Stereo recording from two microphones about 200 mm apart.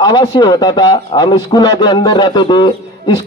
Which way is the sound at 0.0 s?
20° left (ahead or behind).